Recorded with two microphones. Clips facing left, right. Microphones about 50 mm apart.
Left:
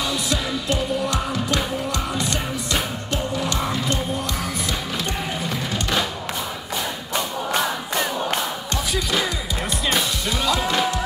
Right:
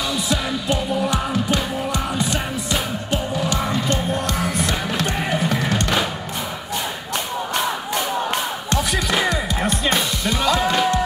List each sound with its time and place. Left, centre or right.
0.3 s music: centre
5.5 s music: right
10.4 s music: right